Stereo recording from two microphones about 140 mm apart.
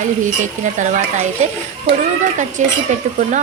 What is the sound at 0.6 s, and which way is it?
Speech, 60° right (ahead or behind).